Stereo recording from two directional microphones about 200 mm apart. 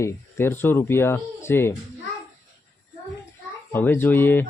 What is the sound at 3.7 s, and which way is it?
Speech, 10° left (ahead or behind).